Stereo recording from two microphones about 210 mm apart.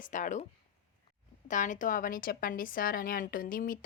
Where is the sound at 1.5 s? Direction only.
35° left (ahead or behind).